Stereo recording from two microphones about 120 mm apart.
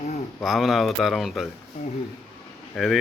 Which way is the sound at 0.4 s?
Centre (ahead or behind).